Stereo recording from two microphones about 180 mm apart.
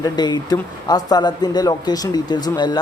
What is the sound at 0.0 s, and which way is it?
Speech, 25° left (ahead or behind).